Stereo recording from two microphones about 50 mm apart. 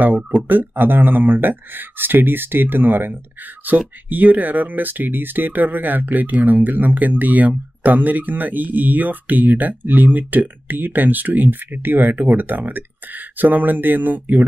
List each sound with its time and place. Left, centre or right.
0.4 s speech: right